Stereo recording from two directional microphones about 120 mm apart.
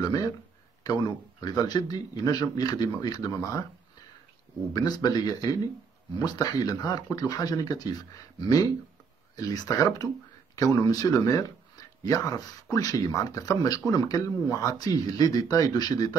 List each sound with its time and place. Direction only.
0.0 s speech: 30° left (ahead or behind)
4.7 s speech: 35° left (ahead or behind)